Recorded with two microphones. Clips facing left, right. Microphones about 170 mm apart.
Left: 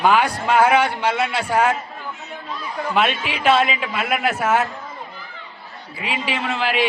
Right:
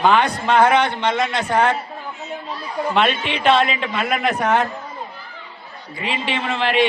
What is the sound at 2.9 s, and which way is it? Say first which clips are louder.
A man's voice: right 1 dB; 5° left (ahead or behind).